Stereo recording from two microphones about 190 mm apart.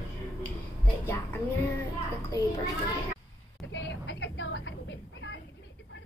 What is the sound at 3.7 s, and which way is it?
Vehicle, 70° left (ahead or behind).